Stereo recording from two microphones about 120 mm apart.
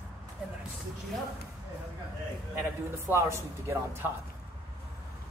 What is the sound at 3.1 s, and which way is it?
Speech, 20° right (ahead or behind).